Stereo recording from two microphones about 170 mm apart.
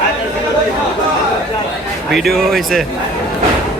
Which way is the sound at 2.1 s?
Centre (ahead or behind).